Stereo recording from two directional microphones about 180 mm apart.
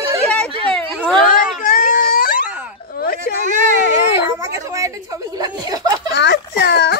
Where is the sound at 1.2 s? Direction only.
50° left (ahead or behind).